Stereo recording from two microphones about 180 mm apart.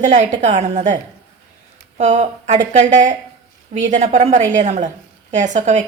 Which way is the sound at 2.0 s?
40° right (ahead or behind).